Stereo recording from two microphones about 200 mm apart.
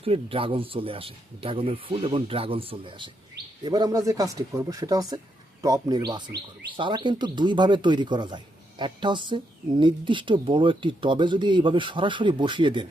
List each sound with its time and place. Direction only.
0.0 s speech: 30° right (ahead or behind)